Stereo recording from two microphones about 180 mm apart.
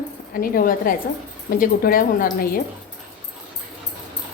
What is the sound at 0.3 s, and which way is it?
Speech, 55° left (ahead or behind).